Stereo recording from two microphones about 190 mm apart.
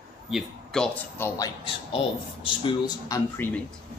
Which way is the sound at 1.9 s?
30° left (ahead or behind).